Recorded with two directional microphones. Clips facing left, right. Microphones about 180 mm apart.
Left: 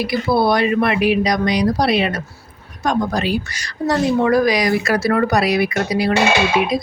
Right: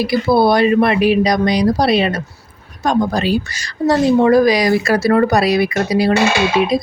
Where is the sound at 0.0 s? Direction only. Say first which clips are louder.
Right 4 dB; 35° right (ahead or behind).